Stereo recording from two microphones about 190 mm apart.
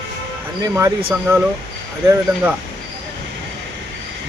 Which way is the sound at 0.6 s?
20° right (ahead or behind).